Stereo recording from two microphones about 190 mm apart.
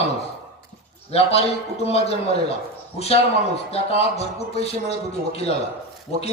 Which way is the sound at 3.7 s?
35° left (ahead or behind).